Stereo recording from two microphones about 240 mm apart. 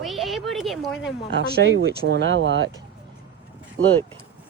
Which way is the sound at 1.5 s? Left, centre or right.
Right.